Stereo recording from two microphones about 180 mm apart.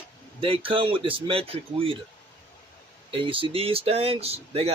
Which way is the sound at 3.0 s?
30° right (ahead or behind).